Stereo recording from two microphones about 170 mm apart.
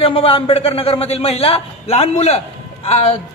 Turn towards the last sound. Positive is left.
turn(degrees=40)  # may be behind; listen again after turning